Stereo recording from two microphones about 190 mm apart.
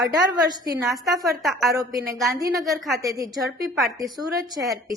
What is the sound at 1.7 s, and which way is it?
A woman's voice, 20° right (ahead or behind).